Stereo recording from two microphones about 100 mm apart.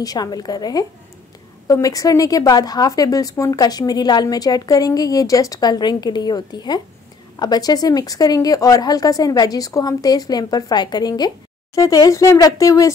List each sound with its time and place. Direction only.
0.0 s speech: 40° left (ahead or behind)